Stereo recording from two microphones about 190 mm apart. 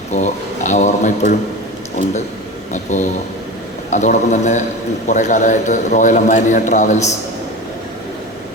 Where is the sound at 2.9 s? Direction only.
35° left (ahead or behind).